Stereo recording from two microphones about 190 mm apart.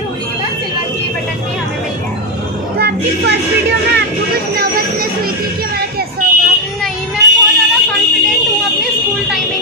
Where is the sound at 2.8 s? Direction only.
60° right (ahead or behind).